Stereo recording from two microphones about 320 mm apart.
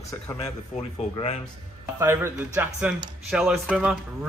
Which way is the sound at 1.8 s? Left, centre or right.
Centre.